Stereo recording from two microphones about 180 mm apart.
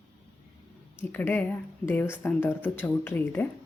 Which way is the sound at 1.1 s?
10° left (ahead or behind).